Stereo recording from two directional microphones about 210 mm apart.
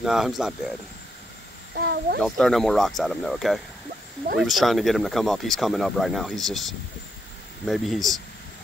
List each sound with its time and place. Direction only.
0.0 s speech: centre (ahead or behind)
1.8 s a sound: 50° right (ahead or behind)
2.2 s speech: centre (ahead or behind)